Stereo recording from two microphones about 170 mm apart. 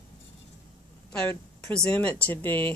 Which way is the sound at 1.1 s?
10° left (ahead or behind).